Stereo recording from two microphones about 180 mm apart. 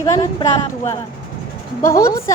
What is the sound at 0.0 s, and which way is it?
A woman's voice, 20° left (ahead or behind).